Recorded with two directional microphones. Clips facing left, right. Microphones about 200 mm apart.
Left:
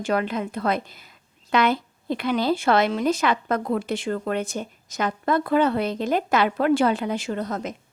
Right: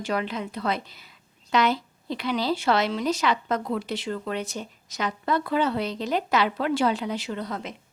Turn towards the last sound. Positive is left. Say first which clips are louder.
# left 4 dB
turn(degrees=45)  # may be behind; listen again after turning